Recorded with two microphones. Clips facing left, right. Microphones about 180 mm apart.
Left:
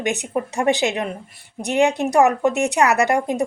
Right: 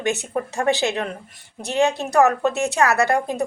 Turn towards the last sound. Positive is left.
turn(degrees=15)  # may be behind; listen again after turning